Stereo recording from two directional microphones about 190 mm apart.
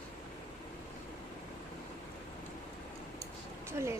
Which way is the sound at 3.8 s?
15° right (ahead or behind).